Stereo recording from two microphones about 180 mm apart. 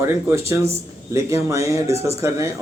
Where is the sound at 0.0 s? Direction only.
15° right (ahead or behind).